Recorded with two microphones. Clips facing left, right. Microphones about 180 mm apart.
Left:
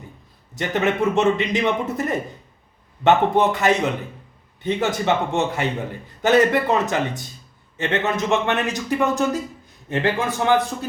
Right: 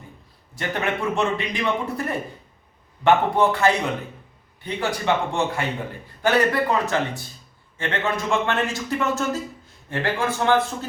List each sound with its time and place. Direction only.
0.5 s a man's voice: 20° left (ahead or behind)